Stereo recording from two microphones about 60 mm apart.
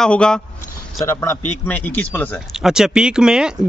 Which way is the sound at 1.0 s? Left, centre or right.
Left.